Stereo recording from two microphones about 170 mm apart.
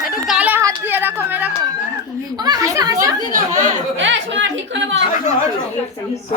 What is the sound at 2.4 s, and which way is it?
Speech, 20° right (ahead or behind).